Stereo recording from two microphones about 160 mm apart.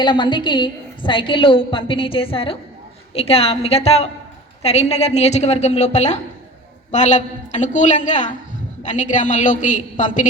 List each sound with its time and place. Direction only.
0.0 s a woman's voice: 30° left (ahead or behind); by 10.2 s 55° left (ahead or behind)